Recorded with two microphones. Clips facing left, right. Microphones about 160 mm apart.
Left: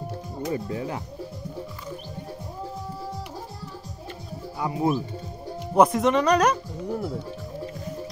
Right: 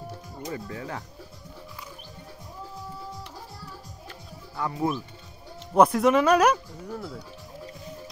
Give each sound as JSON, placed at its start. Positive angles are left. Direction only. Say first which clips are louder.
{"t": 0.5, "sound": "speech", "louder": "left 5 dB", "side_deg": 20}
{"t": 4.6, "sound": "speech", "louder": "left 3 dB", "side_deg": 15}
{"t": 5.8, "sound": "speech", "louder": "even", "side_deg": 0}
{"t": 6.9, "sound": "speech", "louder": "left 7 dB", "side_deg": 25}